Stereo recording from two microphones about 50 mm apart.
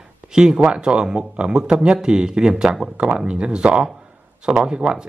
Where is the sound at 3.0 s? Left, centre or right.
Right.